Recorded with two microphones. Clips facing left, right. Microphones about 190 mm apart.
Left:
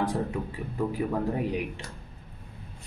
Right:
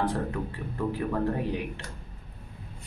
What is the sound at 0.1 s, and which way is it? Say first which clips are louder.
A man's voice: left 1 dB; 10° left (ahead or behind).